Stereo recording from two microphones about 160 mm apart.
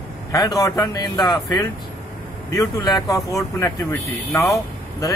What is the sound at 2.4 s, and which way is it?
Speech, 25° left (ahead or behind).